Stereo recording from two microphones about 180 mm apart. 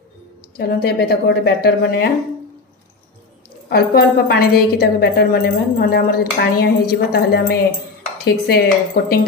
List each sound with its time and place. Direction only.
0.6 s a woman's voice: 60° left (ahead or behind)
3.6 s a woman's voice: 60° left (ahead or behind)